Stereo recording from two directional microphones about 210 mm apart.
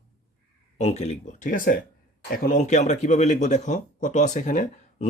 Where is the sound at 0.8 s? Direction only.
30° left (ahead or behind).